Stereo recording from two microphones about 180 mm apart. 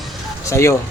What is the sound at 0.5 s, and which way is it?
Speech, 15° left (ahead or behind).